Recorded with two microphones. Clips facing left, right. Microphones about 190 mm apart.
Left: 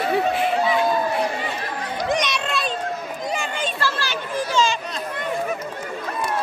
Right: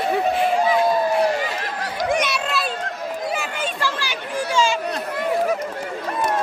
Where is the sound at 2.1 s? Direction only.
5° right (ahead or behind).